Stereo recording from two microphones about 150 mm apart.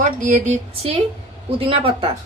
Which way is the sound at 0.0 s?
55° right (ahead or behind).